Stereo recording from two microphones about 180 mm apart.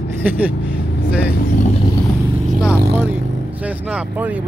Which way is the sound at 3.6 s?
10° right (ahead or behind).